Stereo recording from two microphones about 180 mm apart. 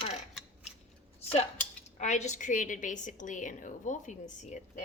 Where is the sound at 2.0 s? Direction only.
40° left (ahead or behind).